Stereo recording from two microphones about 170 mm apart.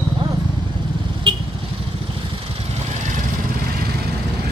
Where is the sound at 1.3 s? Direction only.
30° right (ahead or behind).